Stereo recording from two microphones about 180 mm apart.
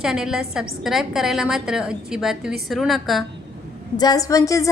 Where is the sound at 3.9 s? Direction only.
20° left (ahead or behind).